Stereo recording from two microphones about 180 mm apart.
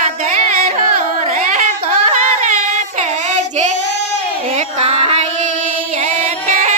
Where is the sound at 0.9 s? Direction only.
45° right (ahead or behind).